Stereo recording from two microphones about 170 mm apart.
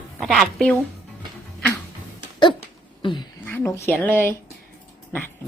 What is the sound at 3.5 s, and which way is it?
Speech, 15° left (ahead or behind).